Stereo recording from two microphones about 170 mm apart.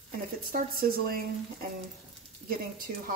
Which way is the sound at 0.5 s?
60° right (ahead or behind).